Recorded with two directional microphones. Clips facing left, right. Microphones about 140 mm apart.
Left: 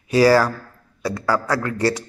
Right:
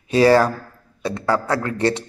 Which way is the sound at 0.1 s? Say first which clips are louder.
Right 1 dB; 25° right (ahead or behind).